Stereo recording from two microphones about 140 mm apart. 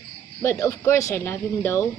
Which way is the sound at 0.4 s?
20° left (ahead or behind).